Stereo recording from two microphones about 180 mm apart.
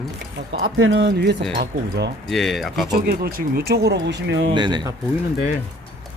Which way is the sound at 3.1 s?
55° right (ahead or behind).